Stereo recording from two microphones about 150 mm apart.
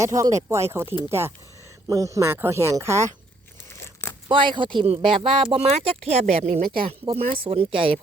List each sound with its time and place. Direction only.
0.0 s speech: 20° right (ahead or behind)
4.3 s speech: 35° right (ahead or behind)
6.6 s speech: 80° right
6.8 s speech: 40° right (ahead or behind)